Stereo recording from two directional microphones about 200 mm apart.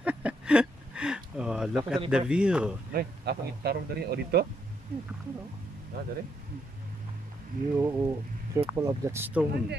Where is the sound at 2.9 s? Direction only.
50° right (ahead or behind).